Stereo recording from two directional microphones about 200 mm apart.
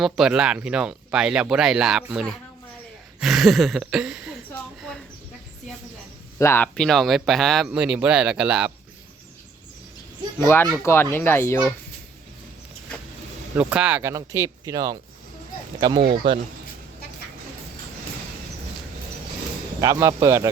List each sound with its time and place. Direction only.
0.0 s speech: 5° right (ahead or behind)
4.8 s a sound: centre (ahead or behind)
6.4 s speech: 10° left (ahead or behind); by 8.7 s 5° right (ahead or behind)
10.4 s speech: 10° left (ahead or behind)
13.6 s speech: 5° right (ahead or behind); by 16.4 s 25° right (ahead or behind)
19.8 s speech: 15° right (ahead or behind)